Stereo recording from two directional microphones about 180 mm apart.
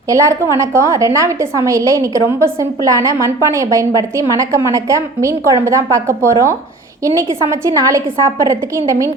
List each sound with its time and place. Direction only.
0.1 s a woman's voice: 15° right (ahead or behind)